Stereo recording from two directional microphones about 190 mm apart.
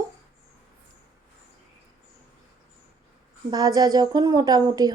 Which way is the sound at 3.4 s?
20° right (ahead or behind).